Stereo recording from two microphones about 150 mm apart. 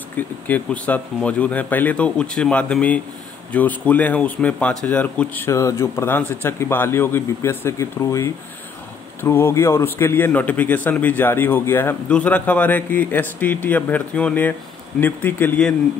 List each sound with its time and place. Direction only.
0.5 s a man's voice: 10° left (ahead or behind)